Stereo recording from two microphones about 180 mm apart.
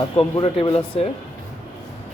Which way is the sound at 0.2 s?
30° left (ahead or behind).